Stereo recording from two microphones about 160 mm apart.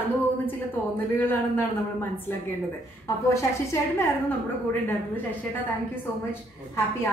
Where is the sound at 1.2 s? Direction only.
10° left (ahead or behind).